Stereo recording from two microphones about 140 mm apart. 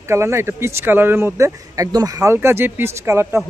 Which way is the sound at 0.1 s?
20° right (ahead or behind).